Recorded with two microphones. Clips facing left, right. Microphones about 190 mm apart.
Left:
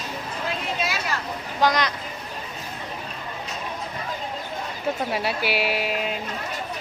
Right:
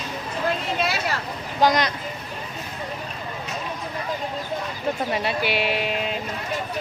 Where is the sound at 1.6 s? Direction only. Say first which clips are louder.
Right 2 dB; 20° right (ahead or behind).